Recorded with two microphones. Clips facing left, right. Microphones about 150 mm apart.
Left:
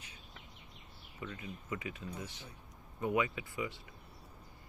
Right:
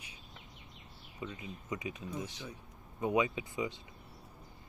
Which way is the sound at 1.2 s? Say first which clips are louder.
Right 1 dB; 20° right (ahead or behind).